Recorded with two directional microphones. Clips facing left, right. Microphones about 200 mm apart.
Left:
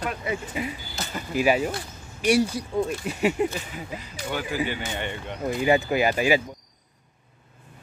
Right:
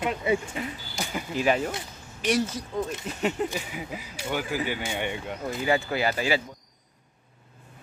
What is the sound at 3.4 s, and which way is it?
Speech, 10° right (ahead or behind).